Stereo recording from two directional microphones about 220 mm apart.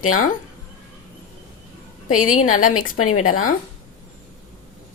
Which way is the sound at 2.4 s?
35° left (ahead or behind).